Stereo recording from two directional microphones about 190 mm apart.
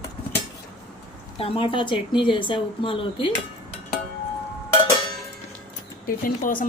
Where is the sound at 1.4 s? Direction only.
30° left (ahead or behind).